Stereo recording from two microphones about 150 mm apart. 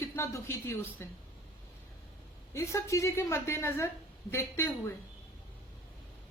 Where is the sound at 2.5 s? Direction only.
20° left (ahead or behind).